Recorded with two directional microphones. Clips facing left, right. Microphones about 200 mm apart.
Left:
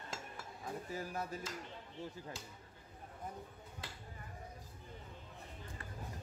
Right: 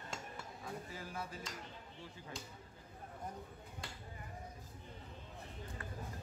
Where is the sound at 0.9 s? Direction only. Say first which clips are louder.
Left 4 dB; 40° left (ahead or behind).